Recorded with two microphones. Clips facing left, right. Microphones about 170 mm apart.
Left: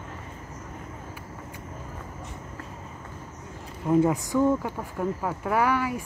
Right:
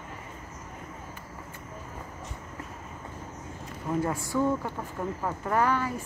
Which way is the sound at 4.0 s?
20° left (ahead or behind).